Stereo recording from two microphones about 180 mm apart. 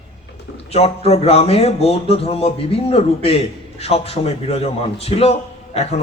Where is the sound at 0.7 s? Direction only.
35° left (ahead or behind).